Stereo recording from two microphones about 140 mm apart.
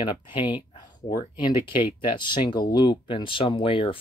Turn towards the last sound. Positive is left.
turn(degrees=40)  # may be behind; listen again after turning